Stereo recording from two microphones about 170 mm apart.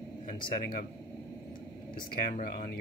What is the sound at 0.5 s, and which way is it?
Speech, 60° left (ahead or behind).